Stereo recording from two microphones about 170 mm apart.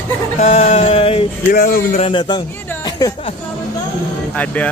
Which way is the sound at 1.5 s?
55° left (ahead or behind).